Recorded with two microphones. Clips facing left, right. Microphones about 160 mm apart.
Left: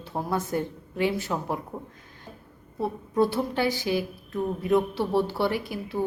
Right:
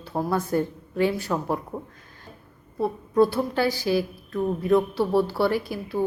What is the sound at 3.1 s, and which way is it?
A woman's voice, 20° left (ahead or behind).